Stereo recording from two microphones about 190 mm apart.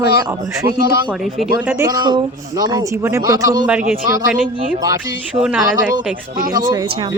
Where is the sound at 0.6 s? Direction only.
50° right (ahead or behind).